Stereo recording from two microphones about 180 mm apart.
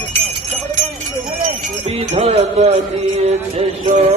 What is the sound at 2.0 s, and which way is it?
Music, 35° right (ahead or behind).